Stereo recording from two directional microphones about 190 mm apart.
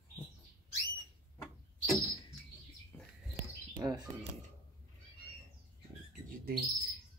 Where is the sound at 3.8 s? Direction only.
20° right (ahead or behind).